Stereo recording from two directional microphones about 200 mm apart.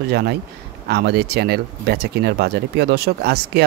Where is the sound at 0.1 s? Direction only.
55° right (ahead or behind).